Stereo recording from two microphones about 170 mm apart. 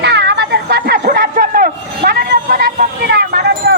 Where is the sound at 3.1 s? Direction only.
70° right (ahead or behind).